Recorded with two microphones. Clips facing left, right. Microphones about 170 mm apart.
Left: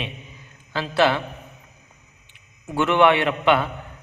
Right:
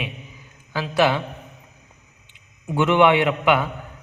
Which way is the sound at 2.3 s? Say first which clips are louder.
Right 3 dB; 15° right (ahead or behind).